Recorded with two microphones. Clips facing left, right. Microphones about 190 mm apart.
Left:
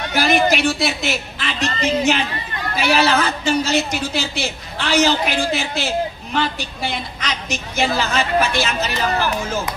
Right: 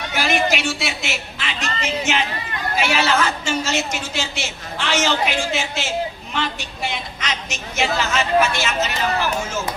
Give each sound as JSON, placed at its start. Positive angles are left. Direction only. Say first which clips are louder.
{"t": 0.1, "sound": "a woman's voice", "louder": "left 4 dB", "side_deg": 35}